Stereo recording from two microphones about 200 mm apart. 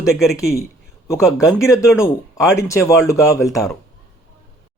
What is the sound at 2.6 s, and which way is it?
Speech, 15° left (ahead or behind).